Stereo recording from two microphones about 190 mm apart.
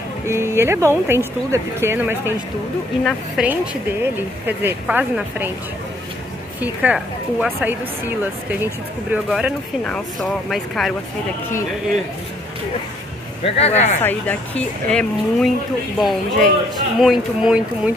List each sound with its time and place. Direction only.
0.3 s speech: 15° right (ahead or behind)
3.0 s speech: 5° left (ahead or behind)
4.0 s speech: 10° right (ahead or behind)
6.6 s speech: 5° right (ahead or behind)
13.6 s speech: 35° left (ahead or behind)
14.0 s speech: 10° left (ahead or behind)